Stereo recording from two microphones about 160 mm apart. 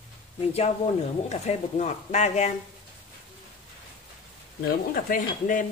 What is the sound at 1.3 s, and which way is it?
Speech, 45° left (ahead or behind).